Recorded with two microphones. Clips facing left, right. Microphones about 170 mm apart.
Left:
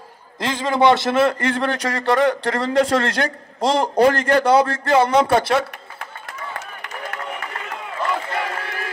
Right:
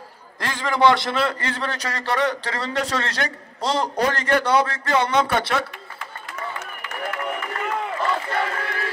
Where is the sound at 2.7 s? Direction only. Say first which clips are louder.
Left 8 dB; 30° left (ahead or behind).